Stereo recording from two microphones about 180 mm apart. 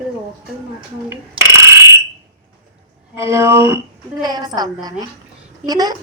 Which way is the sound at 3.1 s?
15° right (ahead or behind).